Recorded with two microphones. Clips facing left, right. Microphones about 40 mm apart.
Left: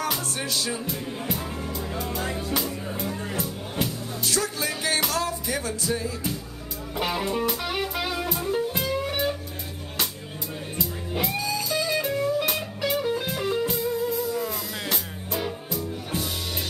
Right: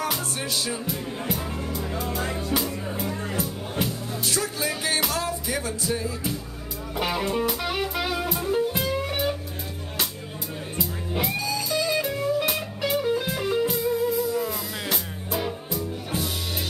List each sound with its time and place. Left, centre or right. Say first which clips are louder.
0.7 s music: even; centre
4.2 s music: left 1 dB; right
4.6 s music: even; centre
5.6 s music: even; right
5.9 s music: even; centre
10.8 s music: right 1 dB; centre